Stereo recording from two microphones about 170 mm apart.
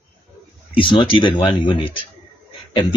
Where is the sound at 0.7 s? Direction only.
30° left (ahead or behind).